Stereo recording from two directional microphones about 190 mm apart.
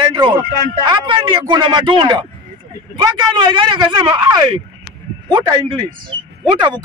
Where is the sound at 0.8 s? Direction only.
25° right (ahead or behind).